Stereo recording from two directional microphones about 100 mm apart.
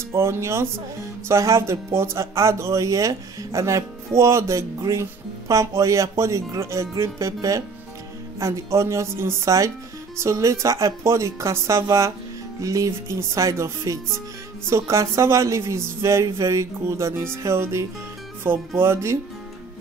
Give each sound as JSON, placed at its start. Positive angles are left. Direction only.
{"t": 0.1, "sound": "speech", "side_deg": -25}